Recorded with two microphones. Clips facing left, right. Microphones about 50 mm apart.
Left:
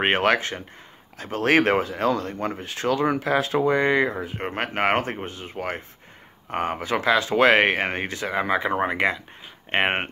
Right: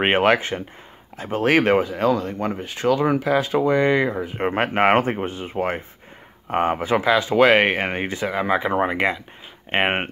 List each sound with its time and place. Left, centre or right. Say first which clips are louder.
0.0 s speech: right 3 dB; centre
1.5 s speech: right 1 dB; centre
4.4 s speech: right 7 dB; centre